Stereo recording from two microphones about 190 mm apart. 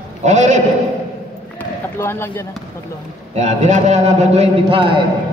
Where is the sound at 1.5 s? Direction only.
10° left (ahead or behind).